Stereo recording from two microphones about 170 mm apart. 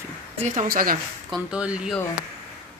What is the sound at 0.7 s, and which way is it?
Speech, 60° right (ahead or behind).